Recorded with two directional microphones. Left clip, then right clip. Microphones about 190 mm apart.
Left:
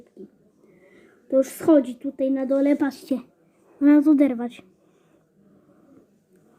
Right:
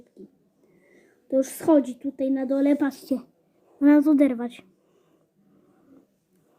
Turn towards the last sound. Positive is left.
turn(degrees=-15)  # may be behind; listen again after turning